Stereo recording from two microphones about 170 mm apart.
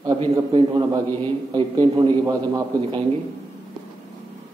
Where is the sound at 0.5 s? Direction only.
25° right (ahead or behind).